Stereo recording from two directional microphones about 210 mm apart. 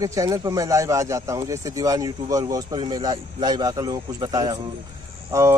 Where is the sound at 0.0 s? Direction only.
15° right (ahead or behind).